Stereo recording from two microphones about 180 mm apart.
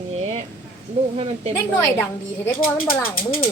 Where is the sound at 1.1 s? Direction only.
35° right (ahead or behind).